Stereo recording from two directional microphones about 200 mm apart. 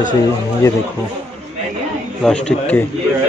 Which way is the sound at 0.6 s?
15° left (ahead or behind).